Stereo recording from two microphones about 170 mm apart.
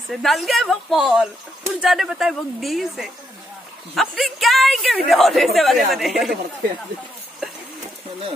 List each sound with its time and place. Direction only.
0.1 s a man's voice: centre (ahead or behind)